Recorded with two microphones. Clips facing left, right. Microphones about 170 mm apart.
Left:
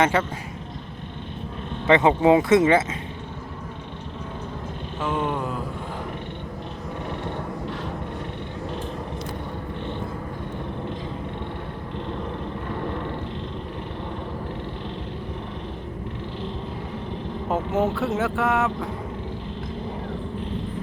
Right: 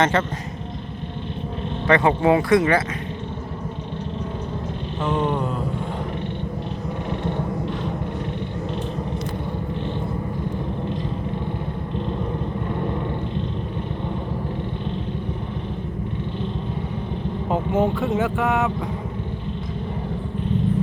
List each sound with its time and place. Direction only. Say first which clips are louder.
0.0 s speech: right 1 dB; 10° left (ahead or behind)
1.9 s speech: left 1 dB; 20° left (ahead or behind)
5.0 s speech: right 3 dB; 5° left (ahead or behind)
17.5 s speech: right 2 dB; centre (ahead or behind)